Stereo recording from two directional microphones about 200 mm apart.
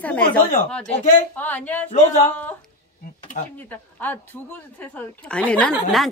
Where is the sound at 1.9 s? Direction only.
35° left (ahead or behind).